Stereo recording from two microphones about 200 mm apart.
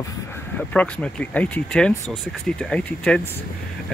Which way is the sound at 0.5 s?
5° left (ahead or behind).